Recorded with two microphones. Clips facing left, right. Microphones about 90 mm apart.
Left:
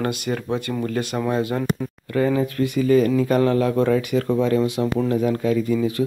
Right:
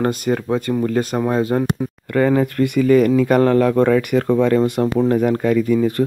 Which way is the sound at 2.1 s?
60° right (ahead or behind).